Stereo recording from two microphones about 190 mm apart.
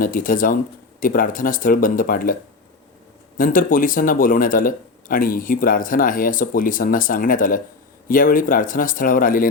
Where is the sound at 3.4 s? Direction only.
45° left (ahead or behind).